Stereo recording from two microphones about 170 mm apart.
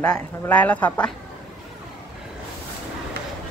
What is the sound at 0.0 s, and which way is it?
Speech, 10° left (ahead or behind).